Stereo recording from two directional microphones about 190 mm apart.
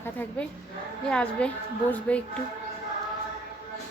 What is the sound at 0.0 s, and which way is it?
A woman's voice, 10° left (ahead or behind).